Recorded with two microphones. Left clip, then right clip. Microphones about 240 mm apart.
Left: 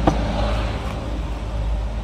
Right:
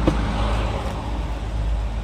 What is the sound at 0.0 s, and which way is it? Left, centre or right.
Vehicle, centre.